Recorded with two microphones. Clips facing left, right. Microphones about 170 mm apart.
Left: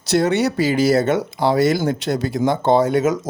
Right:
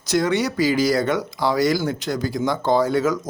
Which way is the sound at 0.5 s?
25° left (ahead or behind).